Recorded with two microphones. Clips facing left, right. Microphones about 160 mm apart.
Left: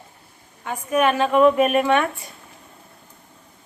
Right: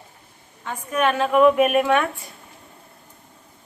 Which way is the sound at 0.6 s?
10° left (ahead or behind).